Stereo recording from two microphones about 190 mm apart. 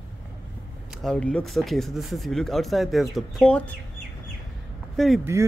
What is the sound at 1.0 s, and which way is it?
Speech, 5° left (ahead or behind).